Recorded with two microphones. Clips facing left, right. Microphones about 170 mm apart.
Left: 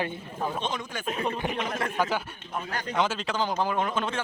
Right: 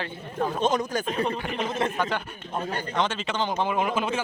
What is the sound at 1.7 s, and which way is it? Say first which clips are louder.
Speech: right 4 dB; 25° right (ahead or behind).